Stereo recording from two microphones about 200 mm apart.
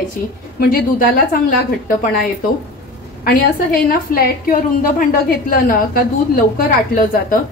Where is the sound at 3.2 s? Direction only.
45° left (ahead or behind).